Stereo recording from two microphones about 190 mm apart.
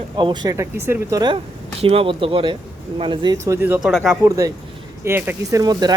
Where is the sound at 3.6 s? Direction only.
5° right (ahead or behind).